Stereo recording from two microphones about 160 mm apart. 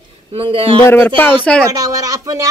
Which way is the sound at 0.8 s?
10° left (ahead or behind).